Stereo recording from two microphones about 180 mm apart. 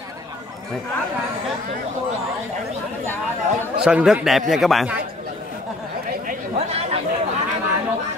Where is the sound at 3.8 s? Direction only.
5° right (ahead or behind).